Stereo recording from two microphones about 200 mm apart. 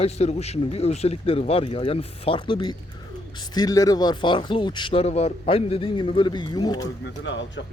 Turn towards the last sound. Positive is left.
turn(degrees=65)  # may be behind; listen again after turning